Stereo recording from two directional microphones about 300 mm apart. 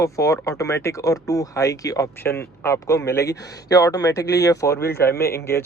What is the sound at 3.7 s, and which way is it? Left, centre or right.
Speech, centre.